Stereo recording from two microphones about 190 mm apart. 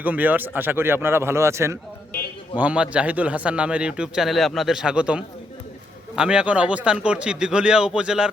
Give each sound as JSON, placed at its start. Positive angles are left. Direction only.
{"t": 0.0, "sound": "a man's voice", "side_deg": -10}